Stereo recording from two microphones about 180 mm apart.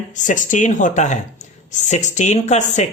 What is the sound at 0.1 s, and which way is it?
Speech, 45° left (ahead or behind).